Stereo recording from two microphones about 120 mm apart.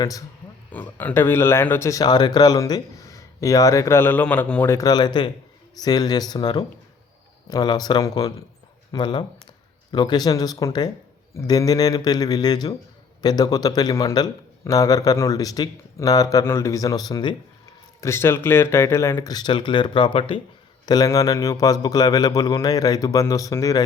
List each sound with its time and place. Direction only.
0.7 s speech: 15° left (ahead or behind)
1.9 s speech: 35° left (ahead or behind); by 4.6 s 10° left (ahead or behind)
4.6 s a man's voice: 25° left (ahead or behind)
18.0 s speech: 20° left (ahead or behind)
19.3 s a man's voice: 40° left (ahead or behind)
20.8 s a man's voice: 35° left (ahead or behind)